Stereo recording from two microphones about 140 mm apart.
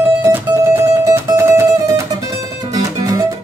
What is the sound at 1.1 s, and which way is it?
Music, 20° right (ahead or behind).